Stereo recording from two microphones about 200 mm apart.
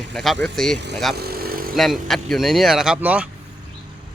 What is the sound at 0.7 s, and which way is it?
Speech, 60° right (ahead or behind).